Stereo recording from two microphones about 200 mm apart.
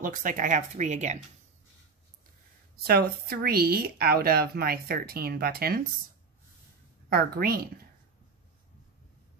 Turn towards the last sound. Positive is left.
turn(degrees=-50)  # may be behind; listen again after turning